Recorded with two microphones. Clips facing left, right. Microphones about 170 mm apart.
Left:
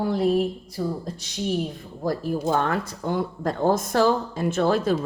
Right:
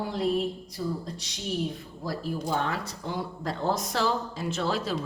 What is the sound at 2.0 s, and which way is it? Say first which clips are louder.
Speech: left 7 dB; 50° left (ahead or behind).